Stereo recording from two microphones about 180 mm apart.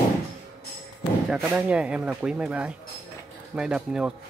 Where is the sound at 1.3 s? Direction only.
5° right (ahead or behind).